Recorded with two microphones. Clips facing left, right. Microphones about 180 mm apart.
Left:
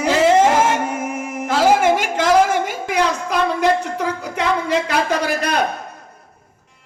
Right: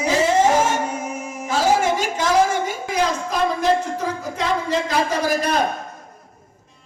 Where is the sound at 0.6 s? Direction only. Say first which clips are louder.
Left 2 dB; 55° left (ahead or behind).